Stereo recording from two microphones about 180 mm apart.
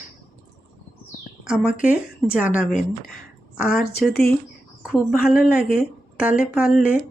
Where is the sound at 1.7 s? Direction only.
50° left (ahead or behind).